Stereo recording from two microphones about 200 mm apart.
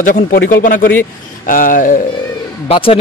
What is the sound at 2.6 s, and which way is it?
Speech, 25° left (ahead or behind).